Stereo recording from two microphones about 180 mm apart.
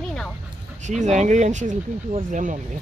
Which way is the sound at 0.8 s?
40° right (ahead or behind).